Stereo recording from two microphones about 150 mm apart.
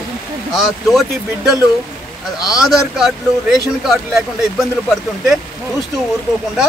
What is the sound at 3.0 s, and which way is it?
Speech, 5° right (ahead or behind).